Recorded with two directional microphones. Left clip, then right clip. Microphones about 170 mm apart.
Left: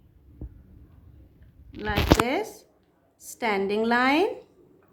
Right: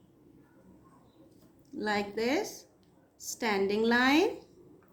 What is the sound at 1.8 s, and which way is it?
A woman's voice, 40° left (ahead or behind).